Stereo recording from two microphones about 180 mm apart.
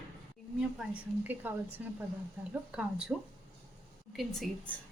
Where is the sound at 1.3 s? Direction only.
10° right (ahead or behind).